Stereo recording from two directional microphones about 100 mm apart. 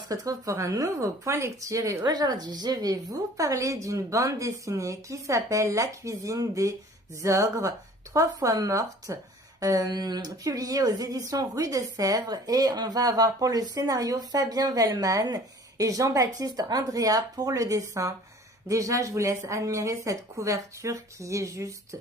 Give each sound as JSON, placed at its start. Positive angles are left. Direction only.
{"t": 0.1, "sound": "speech", "side_deg": -35}